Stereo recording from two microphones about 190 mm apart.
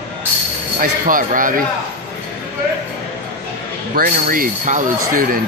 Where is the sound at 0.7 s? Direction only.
45° right (ahead or behind).